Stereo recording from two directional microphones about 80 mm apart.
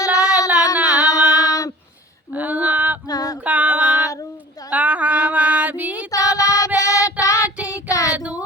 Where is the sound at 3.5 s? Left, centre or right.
Centre.